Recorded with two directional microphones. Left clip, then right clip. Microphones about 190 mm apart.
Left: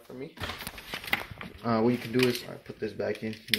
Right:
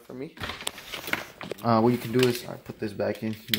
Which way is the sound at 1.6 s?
70° right (ahead or behind).